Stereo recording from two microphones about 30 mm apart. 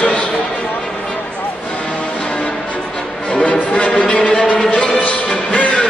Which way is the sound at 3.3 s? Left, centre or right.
Left.